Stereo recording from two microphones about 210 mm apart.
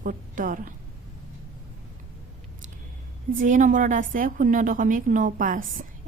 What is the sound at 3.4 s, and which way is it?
A woman's voice, 35° right (ahead or behind).